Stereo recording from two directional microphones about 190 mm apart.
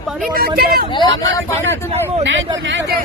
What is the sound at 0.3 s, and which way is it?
Speech, 55° right (ahead or behind).